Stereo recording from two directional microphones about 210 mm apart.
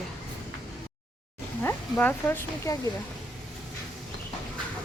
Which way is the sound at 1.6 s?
10° left (ahead or behind).